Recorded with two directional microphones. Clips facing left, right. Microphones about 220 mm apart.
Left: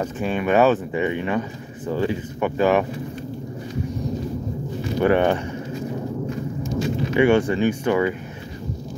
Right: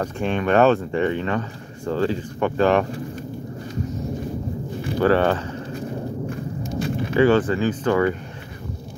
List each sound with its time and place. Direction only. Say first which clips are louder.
0.0 s speech: even; 5° left (ahead or behind)
5.0 s speech: even; 15° left (ahead or behind)
6.7 s a sound: left 2 dB; 60° right (ahead or behind)
7.2 s speech: even; 15° left (ahead or behind)